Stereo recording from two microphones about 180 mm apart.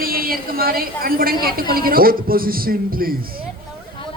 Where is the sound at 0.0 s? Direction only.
55° right (ahead or behind).